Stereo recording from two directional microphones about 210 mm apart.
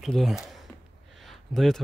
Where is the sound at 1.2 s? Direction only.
Centre (ahead or behind).